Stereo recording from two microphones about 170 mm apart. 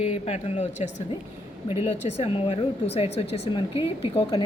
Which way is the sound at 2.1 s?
35° left (ahead or behind).